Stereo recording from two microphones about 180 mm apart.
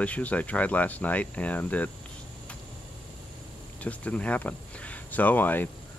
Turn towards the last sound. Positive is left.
turn(degrees=10)  # may be behind; listen again after turning